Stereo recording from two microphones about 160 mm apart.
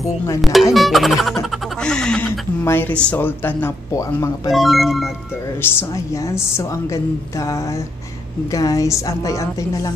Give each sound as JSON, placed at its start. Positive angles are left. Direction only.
{"t": 0.4, "sound": "speech", "side_deg": 0}
{"t": 4.5, "sound": "speech", "side_deg": 0}
{"t": 5.6, "sound": "a woman's voice", "side_deg": 15}